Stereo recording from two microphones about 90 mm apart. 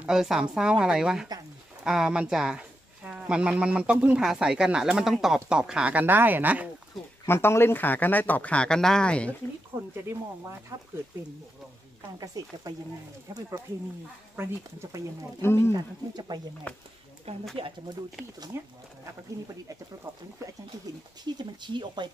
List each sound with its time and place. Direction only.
0.0 s speech: 5° right (ahead or behind)
7.2 s speech: 30° left (ahead or behind); by 9.3 s 10° left (ahead or behind)
9.7 s a sound: 25° right (ahead or behind)
12.2 s speech: 45° right (ahead or behind)
14.3 s speech: 30° right (ahead or behind)
15.4 s speech: 30° left (ahead or behind)
15.7 s speech: 50° right (ahead or behind)
17.3 s speech: 90° right
18.5 s speech: 30° right (ahead or behind)
21.4 s speech: 55° right (ahead or behind)